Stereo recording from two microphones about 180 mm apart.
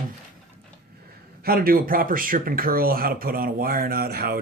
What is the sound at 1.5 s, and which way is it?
Speech, 55° right (ahead or behind).